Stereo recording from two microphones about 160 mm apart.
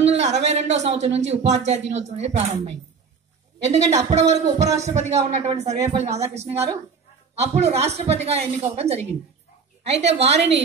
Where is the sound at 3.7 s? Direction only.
45° right (ahead or behind).